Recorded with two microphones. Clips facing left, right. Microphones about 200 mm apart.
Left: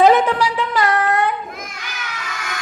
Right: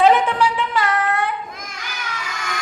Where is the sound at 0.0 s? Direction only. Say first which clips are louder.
Left 2 dB; 40° left (ahead or behind).